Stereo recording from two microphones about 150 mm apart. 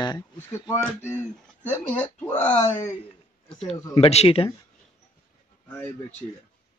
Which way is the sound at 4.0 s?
40° left (ahead or behind).